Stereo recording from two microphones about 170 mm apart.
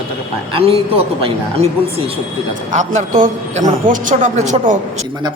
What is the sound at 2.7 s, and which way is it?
A man's voice, 45° right (ahead or behind).